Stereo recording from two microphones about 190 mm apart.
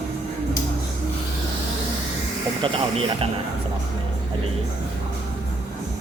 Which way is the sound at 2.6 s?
25° right (ahead or behind).